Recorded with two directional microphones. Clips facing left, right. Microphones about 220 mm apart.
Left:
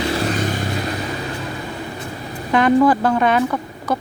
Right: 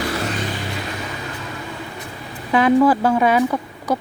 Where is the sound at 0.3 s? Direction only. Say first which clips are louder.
Left 4 dB; 45° left (ahead or behind).